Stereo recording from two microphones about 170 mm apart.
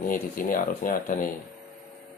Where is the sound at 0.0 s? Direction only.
55° left (ahead or behind).